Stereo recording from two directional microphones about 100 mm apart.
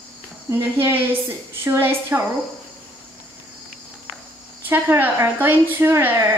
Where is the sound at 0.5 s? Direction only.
25° right (ahead or behind).